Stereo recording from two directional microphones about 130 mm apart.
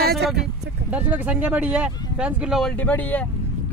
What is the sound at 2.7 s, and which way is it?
Speech, 10° left (ahead or behind).